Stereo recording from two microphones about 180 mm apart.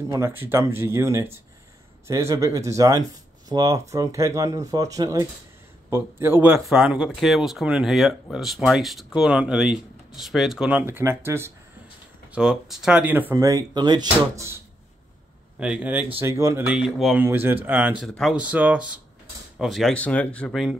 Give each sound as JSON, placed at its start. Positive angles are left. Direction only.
{"t": 0.1, "sound": "speech", "side_deg": -15}
{"t": 12.4, "sound": "speech", "side_deg": 0}
{"t": 13.3, "sound": "speech", "side_deg": -20}
{"t": 15.6, "sound": "speech", "side_deg": -5}